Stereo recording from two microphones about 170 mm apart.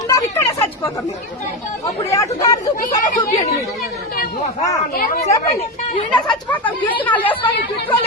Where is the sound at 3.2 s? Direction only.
15° left (ahead or behind).